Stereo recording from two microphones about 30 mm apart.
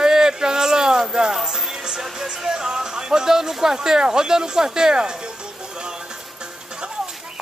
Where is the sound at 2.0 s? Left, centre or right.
Centre.